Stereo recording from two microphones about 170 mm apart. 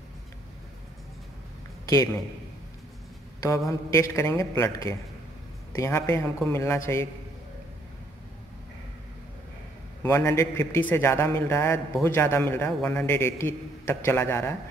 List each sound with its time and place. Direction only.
3.3 s a man's voice: 20° left (ahead or behind)
10.0 s a man's voice: 15° left (ahead or behind)